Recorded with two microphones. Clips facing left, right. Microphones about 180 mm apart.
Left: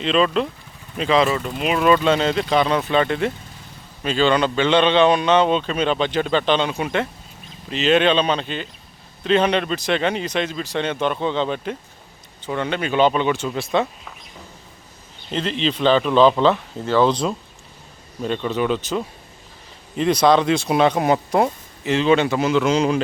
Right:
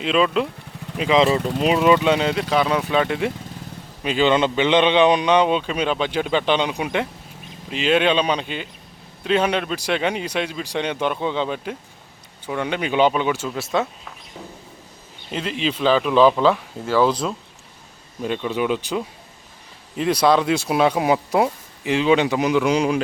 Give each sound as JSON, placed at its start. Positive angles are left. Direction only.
{"t": 0.0, "sound": "a man's voice", "side_deg": -5}
{"t": 1.2, "sound": "speech", "side_deg": -30}
{"t": 2.0, "sound": "a man's voice", "side_deg": -10}
{"t": 15.3, "sound": "a man's voice", "side_deg": -10}